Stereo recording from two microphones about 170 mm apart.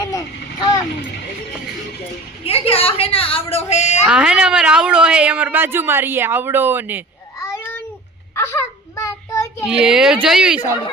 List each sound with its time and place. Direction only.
0.0 s vehicle: 20° left (ahead or behind)
2.4 s a woman's voice: 35° left (ahead or behind)
4.0 s speech: 5° right (ahead or behind)
7.5 s a sound: 15° left (ahead or behind)
8.4 s child singing: 15° left (ahead or behind)
9.6 s speech: 5° right (ahead or behind)